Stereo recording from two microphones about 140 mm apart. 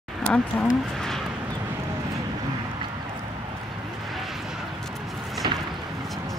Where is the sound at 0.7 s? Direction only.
Centre (ahead or behind).